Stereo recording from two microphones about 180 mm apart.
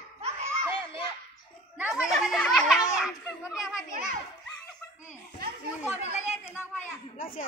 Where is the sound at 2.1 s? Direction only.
Centre (ahead or behind).